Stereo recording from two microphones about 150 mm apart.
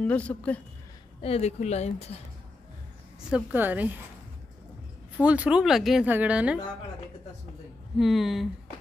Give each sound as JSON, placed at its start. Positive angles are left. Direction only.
{"t": 0.0, "sound": "a woman's voice", "side_deg": 10}
{"t": 1.2, "sound": "speech", "side_deg": 45}
{"t": 3.3, "sound": "a woman's voice", "side_deg": -10}
{"t": 5.1, "sound": "a woman's voice", "side_deg": -10}
{"t": 8.0, "sound": "speech", "side_deg": 0}